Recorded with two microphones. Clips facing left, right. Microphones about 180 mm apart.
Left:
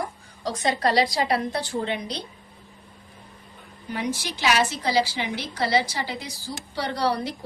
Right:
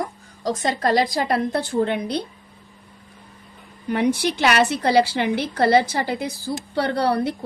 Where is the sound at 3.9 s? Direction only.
60° right (ahead or behind).